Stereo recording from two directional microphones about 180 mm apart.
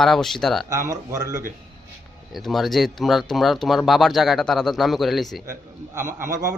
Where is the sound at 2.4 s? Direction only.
Centre (ahead or behind).